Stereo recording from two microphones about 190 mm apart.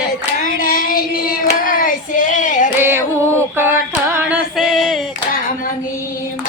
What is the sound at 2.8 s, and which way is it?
Carnatic music, 10° right (ahead or behind).